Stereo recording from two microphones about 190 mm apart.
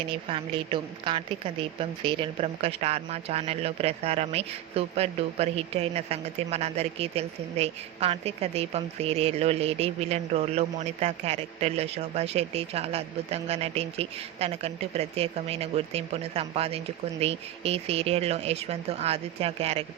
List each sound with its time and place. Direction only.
0.1 s a woman's voice: 30° right (ahead or behind)